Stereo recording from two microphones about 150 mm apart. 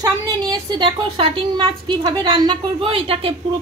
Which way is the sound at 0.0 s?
30° right (ahead or behind).